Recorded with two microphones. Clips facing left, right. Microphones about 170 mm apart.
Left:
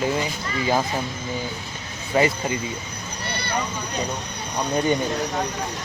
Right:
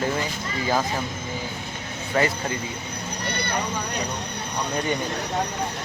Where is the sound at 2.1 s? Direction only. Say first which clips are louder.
Left 3 dB; 15° left (ahead or behind).